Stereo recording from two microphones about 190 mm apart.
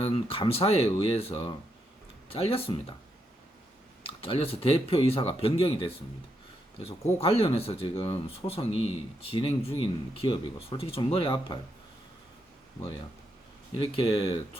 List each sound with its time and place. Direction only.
0.0 s speech: 30° left (ahead or behind)
4.0 s speech: 30° left (ahead or behind)
13.7 s speech: 25° left (ahead or behind)